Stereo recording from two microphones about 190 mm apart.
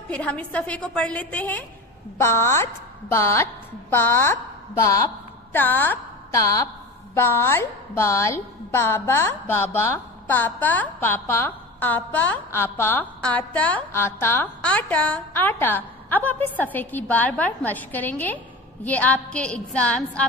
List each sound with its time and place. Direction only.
0.1 s a woman's voice: 5° left (ahead or behind)